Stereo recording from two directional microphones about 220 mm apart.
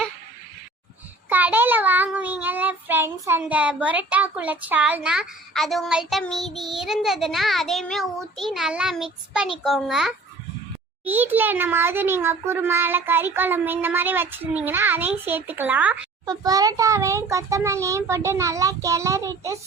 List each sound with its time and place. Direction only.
1.3 s child singing: 10° right (ahead or behind)
11.0 s a child's voice: 10° right (ahead or behind)